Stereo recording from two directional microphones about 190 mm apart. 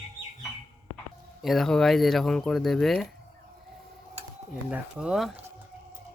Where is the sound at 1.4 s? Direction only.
Centre (ahead or behind).